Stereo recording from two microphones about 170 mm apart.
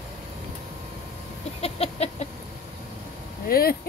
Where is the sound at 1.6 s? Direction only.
35° left (ahead or behind).